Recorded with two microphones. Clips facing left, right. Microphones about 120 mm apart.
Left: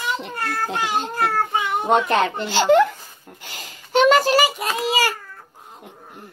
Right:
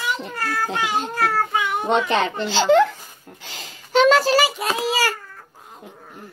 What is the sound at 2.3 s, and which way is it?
Speech, 10° left (ahead or behind).